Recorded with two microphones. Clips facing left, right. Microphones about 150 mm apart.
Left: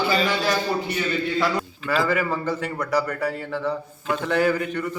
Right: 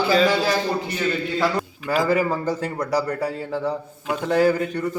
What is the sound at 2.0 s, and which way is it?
A man's voice, 40° right (ahead or behind).